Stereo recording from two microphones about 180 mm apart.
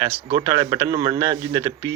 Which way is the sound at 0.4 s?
25° right (ahead or behind).